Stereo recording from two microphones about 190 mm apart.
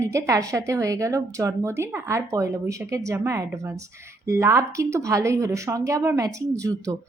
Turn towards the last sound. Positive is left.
turn(degrees=-15)  # may be behind; listen again after turning